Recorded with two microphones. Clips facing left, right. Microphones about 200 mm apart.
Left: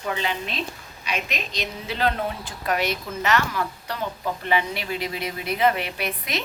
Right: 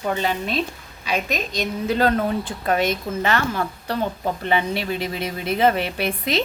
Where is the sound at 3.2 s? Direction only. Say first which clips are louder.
Even; 30° right (ahead or behind).